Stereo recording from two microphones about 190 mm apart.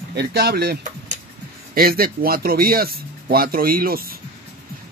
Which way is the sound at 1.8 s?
50° right (ahead or behind).